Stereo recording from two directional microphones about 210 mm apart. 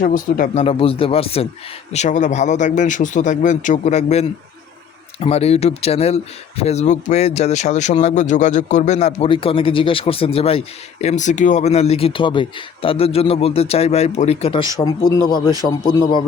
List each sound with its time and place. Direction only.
0.0 s speech: 40° left (ahead or behind)
0.6 s speech: 25° left (ahead or behind)
15.9 s speech: 20° left (ahead or behind)